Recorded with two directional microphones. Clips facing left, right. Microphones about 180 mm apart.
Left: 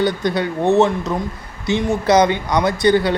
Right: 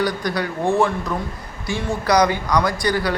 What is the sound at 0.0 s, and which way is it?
A man's voice, 25° left (ahead or behind).